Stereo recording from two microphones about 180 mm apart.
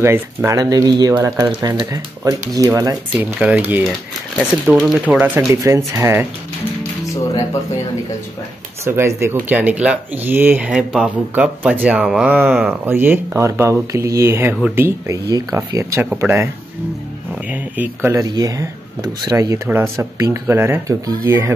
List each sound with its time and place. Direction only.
0.0 s speech: 15° right (ahead or behind)
3.3 s speech: 5° right (ahead or behind)
8.8 s speech: 15° right (ahead or behind)
17.5 s speech: 10° right (ahead or behind)